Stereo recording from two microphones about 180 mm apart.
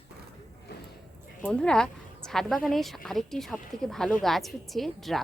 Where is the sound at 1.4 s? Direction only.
5° left (ahead or behind).